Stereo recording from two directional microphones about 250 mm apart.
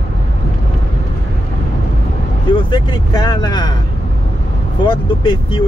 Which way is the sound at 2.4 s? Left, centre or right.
Centre.